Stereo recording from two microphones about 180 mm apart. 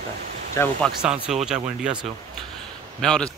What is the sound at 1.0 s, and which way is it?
Speech, 5° right (ahead or behind).